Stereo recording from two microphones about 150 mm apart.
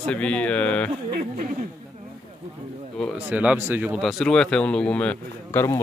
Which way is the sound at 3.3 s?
10° right (ahead or behind).